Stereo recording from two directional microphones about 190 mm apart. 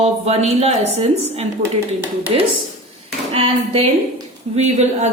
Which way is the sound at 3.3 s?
30° right (ahead or behind).